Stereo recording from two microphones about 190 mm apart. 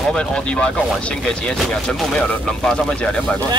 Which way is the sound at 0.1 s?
5° left (ahead or behind).